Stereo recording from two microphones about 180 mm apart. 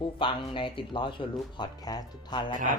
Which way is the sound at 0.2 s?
30° left (ahead or behind).